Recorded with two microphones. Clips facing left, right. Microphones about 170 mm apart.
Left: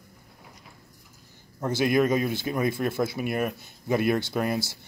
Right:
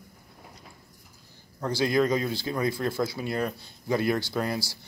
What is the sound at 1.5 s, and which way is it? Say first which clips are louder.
Speech: left 2 dB; 20° left (ahead or behind).